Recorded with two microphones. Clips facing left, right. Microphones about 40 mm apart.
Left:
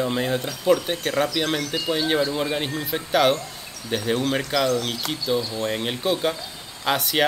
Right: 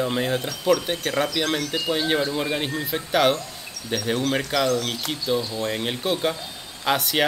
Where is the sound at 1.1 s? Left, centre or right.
Right.